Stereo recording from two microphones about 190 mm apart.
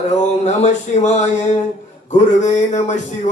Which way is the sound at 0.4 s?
35° left (ahead or behind).